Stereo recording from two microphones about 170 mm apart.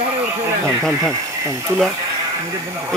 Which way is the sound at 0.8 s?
5° left (ahead or behind).